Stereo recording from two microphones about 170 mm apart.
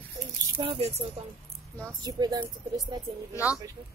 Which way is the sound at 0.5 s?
30° right (ahead or behind).